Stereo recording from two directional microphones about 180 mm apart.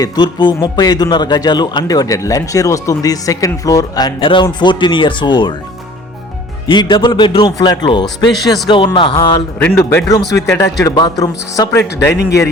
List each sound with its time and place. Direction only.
0.0 s a man's voice: 25° left (ahead or behind)
6.7 s a man's voice: 25° left (ahead or behind)